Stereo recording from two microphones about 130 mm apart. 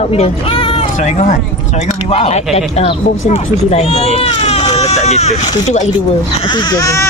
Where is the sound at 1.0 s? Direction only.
60° left (ahead or behind).